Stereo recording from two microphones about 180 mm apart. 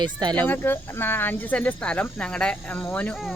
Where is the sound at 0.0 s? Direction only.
25° right (ahead or behind).